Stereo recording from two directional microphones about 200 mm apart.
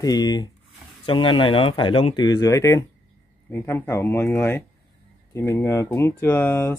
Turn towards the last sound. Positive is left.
turn(degrees=10)  # may be behind; listen again after turning